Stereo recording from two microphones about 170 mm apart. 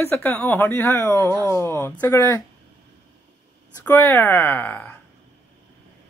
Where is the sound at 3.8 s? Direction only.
15° left (ahead or behind).